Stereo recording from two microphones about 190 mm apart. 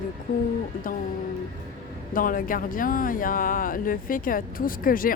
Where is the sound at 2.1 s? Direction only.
45° left (ahead or behind).